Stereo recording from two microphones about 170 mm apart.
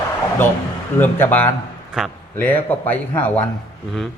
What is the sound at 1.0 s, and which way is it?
Speech, 10° left (ahead or behind).